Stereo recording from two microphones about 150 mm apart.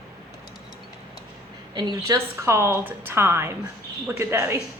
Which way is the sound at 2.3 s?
20° right (ahead or behind).